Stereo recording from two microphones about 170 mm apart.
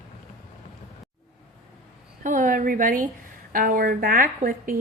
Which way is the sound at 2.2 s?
50° right (ahead or behind).